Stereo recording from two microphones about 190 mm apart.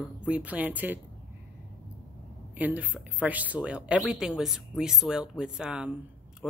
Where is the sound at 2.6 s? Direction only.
10° right (ahead or behind).